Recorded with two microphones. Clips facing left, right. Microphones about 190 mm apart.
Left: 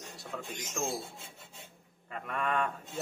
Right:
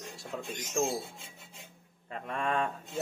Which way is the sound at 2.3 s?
30° right (ahead or behind).